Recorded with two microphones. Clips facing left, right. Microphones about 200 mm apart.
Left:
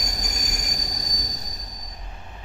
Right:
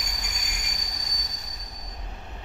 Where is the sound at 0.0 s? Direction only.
40° left (ahead or behind).